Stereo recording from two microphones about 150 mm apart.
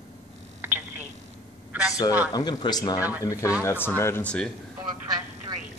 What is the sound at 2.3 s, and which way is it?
Speech, 30° left (ahead or behind).